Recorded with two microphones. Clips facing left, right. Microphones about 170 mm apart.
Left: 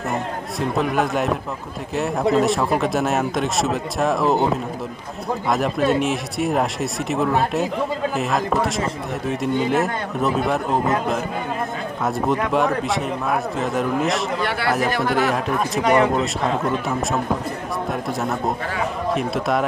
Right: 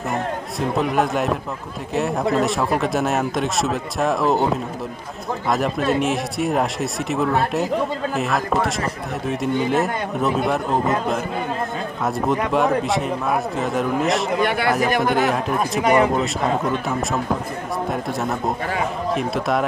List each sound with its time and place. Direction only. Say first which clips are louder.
0.1 s speech: right 1 dB; centre (ahead or behind)
14.9 s speech: right 2 dB; 20° right (ahead or behind)
15.1 s speech: right 1 dB; centre (ahead or behind)
15.8 s speech: even; 15° right (ahead or behind)
16.6 s speech: even; centre (ahead or behind)
19.1 s speech: even; centre (ahead or behind)